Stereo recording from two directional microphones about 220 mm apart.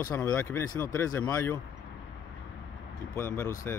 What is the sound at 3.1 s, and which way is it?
Speech, 15° left (ahead or behind).